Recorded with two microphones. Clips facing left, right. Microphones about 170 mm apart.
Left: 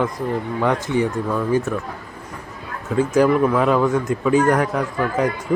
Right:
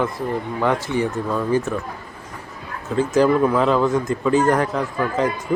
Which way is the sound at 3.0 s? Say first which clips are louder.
Even; 10° left (ahead or behind).